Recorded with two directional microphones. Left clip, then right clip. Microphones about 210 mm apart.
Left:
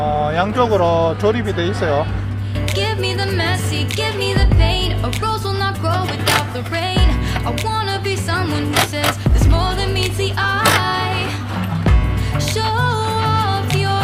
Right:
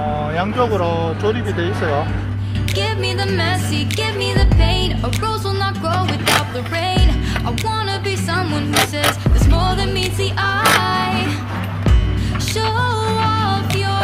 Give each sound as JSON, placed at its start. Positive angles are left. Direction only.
{"t": 0.3, "sound": "speech", "side_deg": 30}
{"t": 1.5, "sound": "speech", "side_deg": 20}
{"t": 2.7, "sound": "music", "side_deg": 0}
{"t": 12.5, "sound": "music", "side_deg": 0}